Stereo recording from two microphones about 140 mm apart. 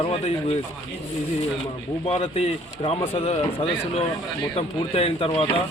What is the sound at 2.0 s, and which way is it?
Speech, 45° left (ahead or behind).